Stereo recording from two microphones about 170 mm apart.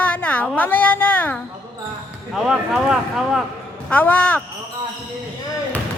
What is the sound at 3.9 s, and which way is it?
Speech, 10° left (ahead or behind).